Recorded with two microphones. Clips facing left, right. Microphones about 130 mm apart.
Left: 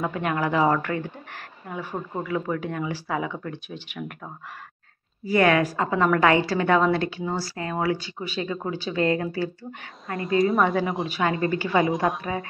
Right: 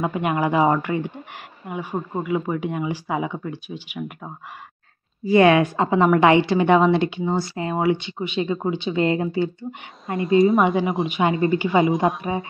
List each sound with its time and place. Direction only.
0.0 s speech: 15° right (ahead or behind)
5.2 s a woman's voice: 20° right (ahead or behind)
10.4 s speech: centre (ahead or behind)
11.1 s a woman's voice: 20° right (ahead or behind)